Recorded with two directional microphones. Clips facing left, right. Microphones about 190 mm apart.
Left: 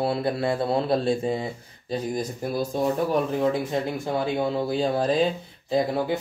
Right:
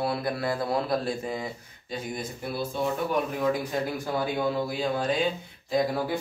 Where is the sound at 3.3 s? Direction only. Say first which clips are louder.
Left 3 dB; 25° left (ahead or behind).